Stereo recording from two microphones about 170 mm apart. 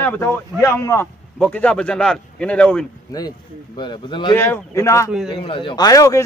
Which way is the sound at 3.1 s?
20° left (ahead or behind).